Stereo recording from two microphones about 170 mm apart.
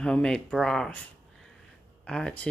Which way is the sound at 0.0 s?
5° left (ahead or behind).